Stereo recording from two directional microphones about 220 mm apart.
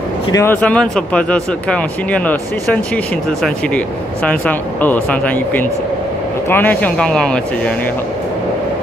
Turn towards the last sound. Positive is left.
turn(degrees=5)  # may be behind; listen again after turning